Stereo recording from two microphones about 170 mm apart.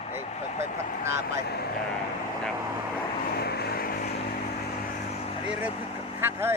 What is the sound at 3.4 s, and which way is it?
Vehicle, 70° left (ahead or behind).